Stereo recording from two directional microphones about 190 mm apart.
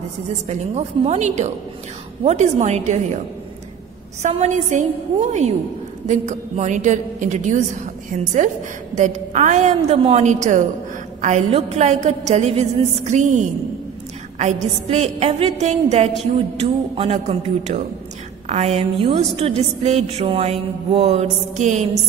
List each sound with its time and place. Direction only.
0.5 s a woman's voice: 35° right (ahead or behind)
4.2 s a woman's voice: 35° right (ahead or behind)
14.4 s a woman's voice: 35° right (ahead or behind)